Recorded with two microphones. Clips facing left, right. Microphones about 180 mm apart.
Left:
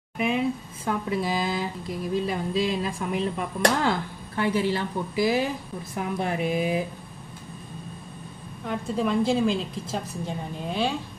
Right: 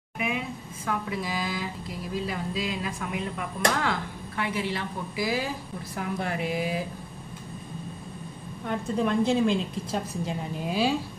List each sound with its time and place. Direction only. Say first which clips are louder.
0.8 s speech: left 4 dB; 25° left (ahead or behind)
8.6 s a woman's voice: even; centre (ahead or behind)